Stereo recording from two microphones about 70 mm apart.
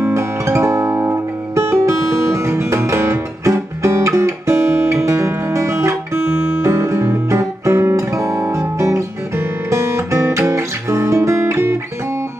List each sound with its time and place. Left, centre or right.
0.0 s guitar: right